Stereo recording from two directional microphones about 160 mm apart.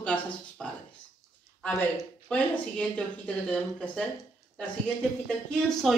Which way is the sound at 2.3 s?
5° left (ahead or behind).